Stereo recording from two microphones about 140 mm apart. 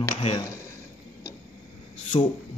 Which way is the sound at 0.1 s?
45° left (ahead or behind).